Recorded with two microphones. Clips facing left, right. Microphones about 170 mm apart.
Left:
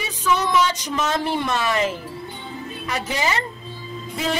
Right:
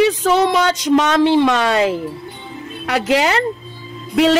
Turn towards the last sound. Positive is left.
turn(degrees=-80)